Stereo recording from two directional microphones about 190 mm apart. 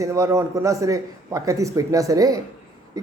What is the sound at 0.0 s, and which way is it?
Speech, 15° right (ahead or behind).